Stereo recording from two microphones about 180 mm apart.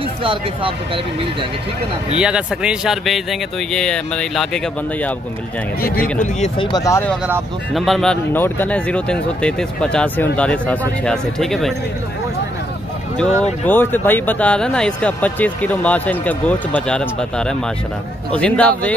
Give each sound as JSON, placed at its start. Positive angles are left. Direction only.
{"t": 0.2, "sound": "speech", "side_deg": -30}
{"t": 2.1, "sound": "speech", "side_deg": -5}
{"t": 5.8, "sound": "speech", "side_deg": 55}
{"t": 6.6, "sound": "speech", "side_deg": 20}
{"t": 7.7, "sound": "speech", "side_deg": 0}
{"t": 13.4, "sound": "speech", "side_deg": 10}